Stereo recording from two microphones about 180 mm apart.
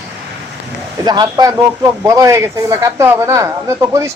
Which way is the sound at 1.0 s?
20° right (ahead or behind).